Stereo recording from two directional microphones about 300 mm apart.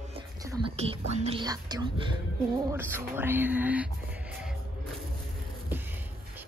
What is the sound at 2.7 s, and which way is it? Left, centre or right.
Speech, centre.